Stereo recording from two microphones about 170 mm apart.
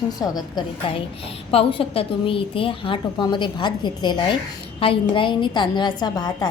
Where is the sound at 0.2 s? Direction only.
25° left (ahead or behind).